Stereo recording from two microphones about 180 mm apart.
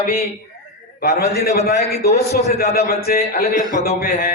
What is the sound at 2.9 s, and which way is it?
A man's voice, 55° left (ahead or behind).